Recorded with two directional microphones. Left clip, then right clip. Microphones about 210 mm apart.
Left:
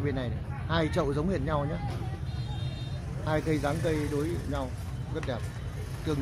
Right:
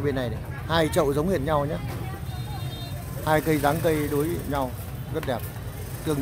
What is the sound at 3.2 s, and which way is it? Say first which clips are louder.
Speech: right 7 dB; 15° right (ahead or behind).